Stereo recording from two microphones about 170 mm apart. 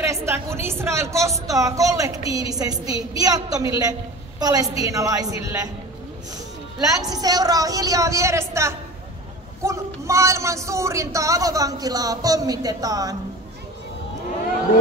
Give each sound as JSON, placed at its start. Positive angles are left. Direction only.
{"t": 0.0, "sound": "a woman's voice", "side_deg": -15}
{"t": 7.0, "sound": "a woman's voice", "side_deg": -20}